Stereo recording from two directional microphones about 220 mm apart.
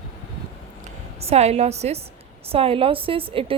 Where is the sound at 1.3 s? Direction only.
30° right (ahead or behind).